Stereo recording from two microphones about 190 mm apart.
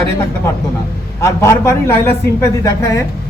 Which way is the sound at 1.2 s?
15° left (ahead or behind).